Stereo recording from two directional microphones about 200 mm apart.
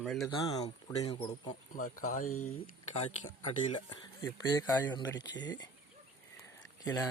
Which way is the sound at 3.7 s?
20° left (ahead or behind).